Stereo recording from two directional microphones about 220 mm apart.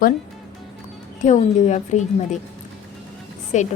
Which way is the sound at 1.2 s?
35° left (ahead or behind).